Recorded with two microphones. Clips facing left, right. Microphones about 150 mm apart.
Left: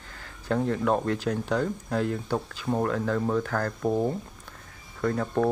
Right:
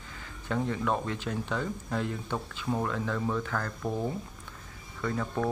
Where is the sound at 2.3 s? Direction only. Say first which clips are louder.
Left 4 dB; 35° left (ahead or behind).